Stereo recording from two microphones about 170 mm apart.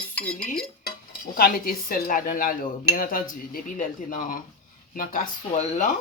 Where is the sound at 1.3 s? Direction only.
60° left (ahead or behind); by 5.9 s 45° left (ahead or behind).